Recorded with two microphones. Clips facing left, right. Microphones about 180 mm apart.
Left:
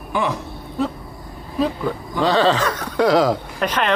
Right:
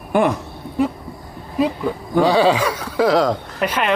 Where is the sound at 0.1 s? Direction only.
55° right (ahead or behind).